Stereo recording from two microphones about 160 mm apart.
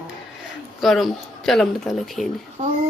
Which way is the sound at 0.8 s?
Centre (ahead or behind).